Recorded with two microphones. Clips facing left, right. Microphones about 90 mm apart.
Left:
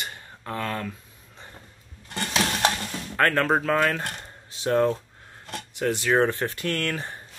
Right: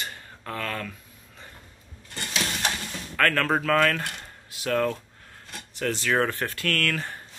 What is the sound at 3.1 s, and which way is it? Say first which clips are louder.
Speech: left 2 dB; 25° left (ahead or behind).